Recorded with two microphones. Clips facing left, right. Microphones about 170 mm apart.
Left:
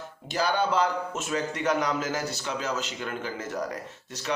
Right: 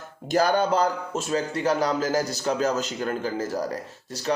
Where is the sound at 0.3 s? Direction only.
45° right (ahead or behind).